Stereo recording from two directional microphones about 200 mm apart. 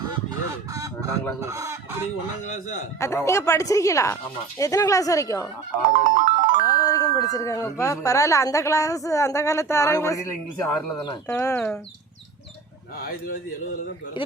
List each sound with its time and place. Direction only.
0.1 s fowl: 15° right (ahead or behind)
1.4 s speech: 15° right (ahead or behind)
2.4 s a man's voice: 40° left (ahead or behind)
3.0 s speech: 15° left (ahead or behind)
5.9 s music: 40° right (ahead or behind)
6.7 s speech: 15° left (ahead or behind)
14.2 s a man's voice: 25° left (ahead or behind)